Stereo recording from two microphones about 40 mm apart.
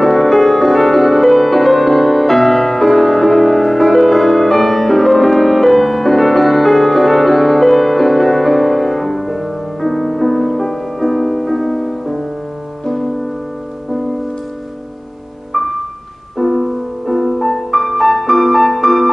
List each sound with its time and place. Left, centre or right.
0.0 s music: centre
15.5 s music: centre